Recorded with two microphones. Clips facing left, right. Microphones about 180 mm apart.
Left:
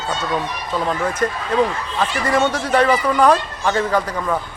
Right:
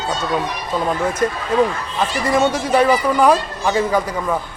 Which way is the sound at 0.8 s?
10° right (ahead or behind).